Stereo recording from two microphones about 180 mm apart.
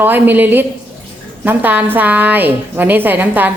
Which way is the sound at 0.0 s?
10° right (ahead or behind).